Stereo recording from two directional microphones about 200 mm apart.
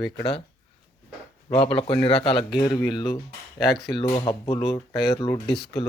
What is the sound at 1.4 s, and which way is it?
Speech, 25° left (ahead or behind).